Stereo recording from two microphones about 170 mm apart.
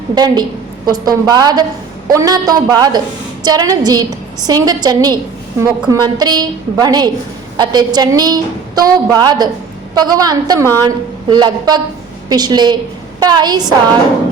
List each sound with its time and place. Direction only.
0.1 s a woman's voice: 25° right (ahead or behind)